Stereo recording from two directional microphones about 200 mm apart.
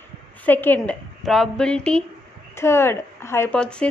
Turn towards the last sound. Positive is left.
turn(degrees=5)  # may be behind; listen again after turning